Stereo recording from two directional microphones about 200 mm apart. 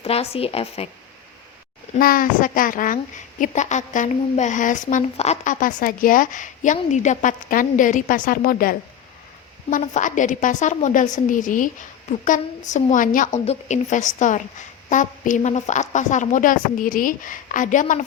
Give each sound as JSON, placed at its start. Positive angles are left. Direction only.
{"t": 0.0, "sound": "speech", "side_deg": 30}
{"t": 2.0, "sound": "a woman's voice", "side_deg": 45}